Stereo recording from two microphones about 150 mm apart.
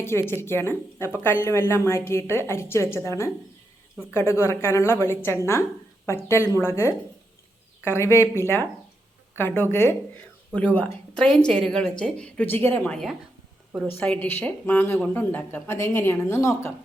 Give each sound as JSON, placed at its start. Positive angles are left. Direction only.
{"t": 0.0, "sound": "speech", "side_deg": 15}